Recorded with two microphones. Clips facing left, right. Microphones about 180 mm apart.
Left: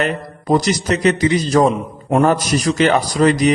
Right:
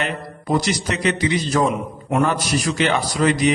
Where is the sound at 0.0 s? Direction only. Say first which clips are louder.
Left 5 dB; 40° left (ahead or behind).